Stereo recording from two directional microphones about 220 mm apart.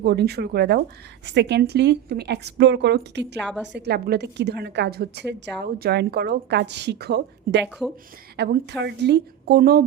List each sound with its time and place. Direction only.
0.0 s a woman's voice: 45° right (ahead or behind)
7.8 s speech: 5° left (ahead or behind)
8.4 s a woman's voice: 50° right (ahead or behind)